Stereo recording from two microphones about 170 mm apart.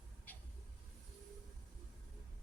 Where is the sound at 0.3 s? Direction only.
10° left (ahead or behind).